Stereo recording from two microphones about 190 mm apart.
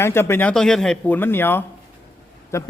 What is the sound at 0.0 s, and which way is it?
Speech, 15° left (ahead or behind).